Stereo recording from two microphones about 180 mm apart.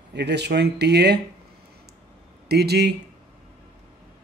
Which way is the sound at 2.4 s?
65° right (ahead or behind).